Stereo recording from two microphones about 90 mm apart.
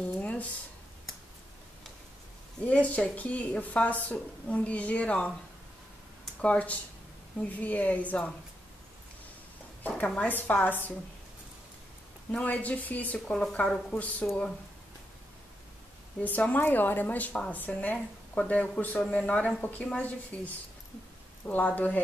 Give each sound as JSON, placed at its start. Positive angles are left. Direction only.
{"t": 0.2, "sound": "a sound", "side_deg": 15}
{"t": 2.6, "sound": "speech", "side_deg": 15}
{"t": 6.4, "sound": "speech", "side_deg": 15}
{"t": 9.8, "sound": "a woman's voice", "side_deg": 15}
{"t": 12.3, "sound": "speech", "side_deg": 15}
{"t": 16.2, "sound": "a woman's voice", "side_deg": 15}
{"t": 17.9, "sound": "a woman's voice", "side_deg": 5}